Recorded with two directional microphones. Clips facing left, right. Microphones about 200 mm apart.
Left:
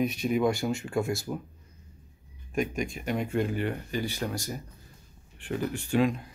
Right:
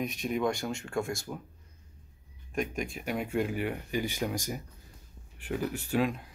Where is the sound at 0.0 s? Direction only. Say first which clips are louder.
Left 5 dB; centre (ahead or behind).